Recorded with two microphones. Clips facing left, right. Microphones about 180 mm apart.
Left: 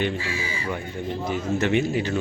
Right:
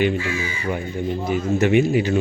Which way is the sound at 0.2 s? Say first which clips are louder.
Right 5 dB; 30° left (ahead or behind).